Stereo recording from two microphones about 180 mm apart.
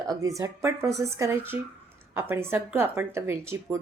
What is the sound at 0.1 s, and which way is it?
A woman's voice, 15° right (ahead or behind).